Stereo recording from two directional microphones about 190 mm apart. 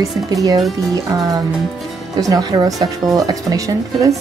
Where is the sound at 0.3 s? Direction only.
20° right (ahead or behind).